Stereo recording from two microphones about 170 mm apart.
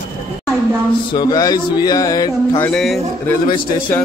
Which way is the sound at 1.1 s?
25° left (ahead or behind).